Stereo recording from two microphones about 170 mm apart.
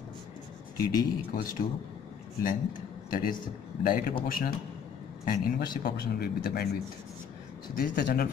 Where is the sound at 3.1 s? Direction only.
55° left (ahead or behind).